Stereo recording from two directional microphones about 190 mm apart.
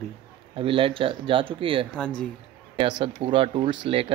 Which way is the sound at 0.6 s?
30° right (ahead or behind).